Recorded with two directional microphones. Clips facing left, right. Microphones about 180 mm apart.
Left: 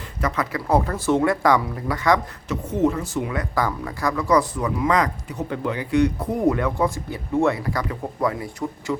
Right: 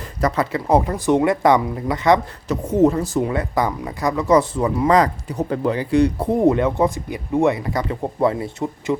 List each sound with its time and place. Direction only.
0.2 s speech: 35° right (ahead or behind)
0.5 s speech: 20° right (ahead or behind)
2.5 s speech: 40° right (ahead or behind)
3.5 s speech: 20° right (ahead or behind)